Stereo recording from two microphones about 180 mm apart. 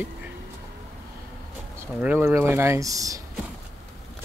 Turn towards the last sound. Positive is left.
turn(degrees=-20)  # may be behind; listen again after turning